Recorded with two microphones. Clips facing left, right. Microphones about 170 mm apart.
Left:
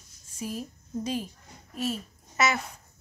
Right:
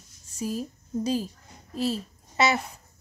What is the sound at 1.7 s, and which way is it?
Babbling, 30° right (ahead or behind).